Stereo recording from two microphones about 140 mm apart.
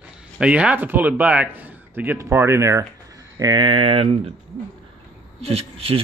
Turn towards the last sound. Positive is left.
turn(degrees=-45)  # may be behind; listen again after turning